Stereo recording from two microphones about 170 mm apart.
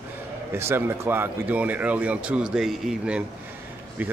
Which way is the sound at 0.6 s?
15° right (ahead or behind).